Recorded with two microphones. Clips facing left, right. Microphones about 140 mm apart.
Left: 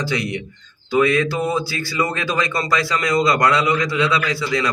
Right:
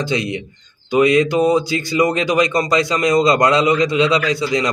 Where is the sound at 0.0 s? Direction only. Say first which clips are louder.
Right 3 dB; 20° right (ahead or behind).